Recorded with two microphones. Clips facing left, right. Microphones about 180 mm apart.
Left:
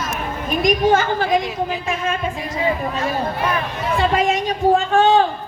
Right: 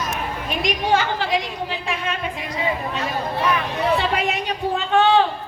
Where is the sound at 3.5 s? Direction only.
45° left (ahead or behind).